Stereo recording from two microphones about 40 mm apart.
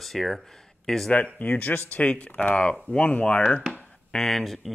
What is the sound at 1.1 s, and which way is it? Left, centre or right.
Speech, left.